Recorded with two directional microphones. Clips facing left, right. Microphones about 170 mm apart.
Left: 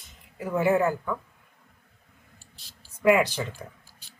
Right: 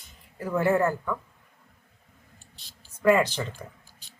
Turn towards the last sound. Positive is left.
turn(degrees=10)  # may be behind; listen again after turning